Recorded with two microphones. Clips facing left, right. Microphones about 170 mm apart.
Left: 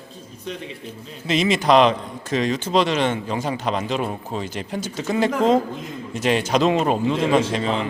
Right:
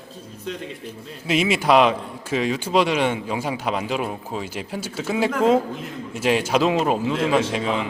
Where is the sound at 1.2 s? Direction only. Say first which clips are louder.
Left 1 dB; 10° right (ahead or behind).